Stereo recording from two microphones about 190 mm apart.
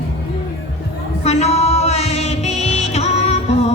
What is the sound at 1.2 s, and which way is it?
Music, 35° left (ahead or behind).